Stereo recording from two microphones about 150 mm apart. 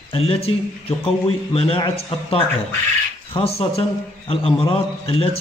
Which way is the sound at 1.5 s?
40° left (ahead or behind).